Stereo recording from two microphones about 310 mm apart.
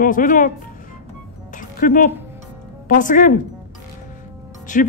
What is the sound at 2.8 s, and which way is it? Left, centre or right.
Speech, left.